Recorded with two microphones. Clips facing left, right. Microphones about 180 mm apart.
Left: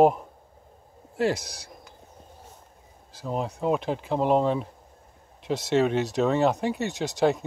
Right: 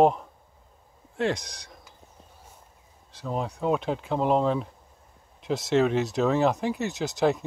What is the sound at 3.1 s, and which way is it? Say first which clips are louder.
Speech: left 1 dB; centre (ahead or behind).